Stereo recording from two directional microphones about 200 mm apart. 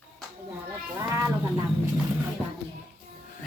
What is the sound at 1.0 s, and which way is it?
Speech, 15° right (ahead or behind).